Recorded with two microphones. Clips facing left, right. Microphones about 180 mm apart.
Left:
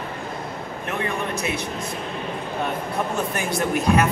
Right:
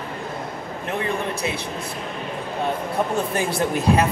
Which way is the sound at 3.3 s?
30° right (ahead or behind).